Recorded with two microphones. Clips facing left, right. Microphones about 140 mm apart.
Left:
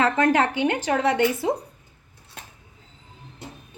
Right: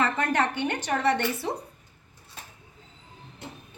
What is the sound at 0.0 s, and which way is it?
Speech, 90° left.